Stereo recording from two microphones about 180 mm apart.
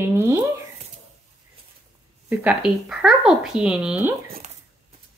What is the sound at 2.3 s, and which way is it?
A child's voice, 5° right (ahead or behind).